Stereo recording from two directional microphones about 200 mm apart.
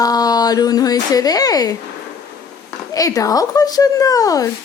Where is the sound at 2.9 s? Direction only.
15° left (ahead or behind).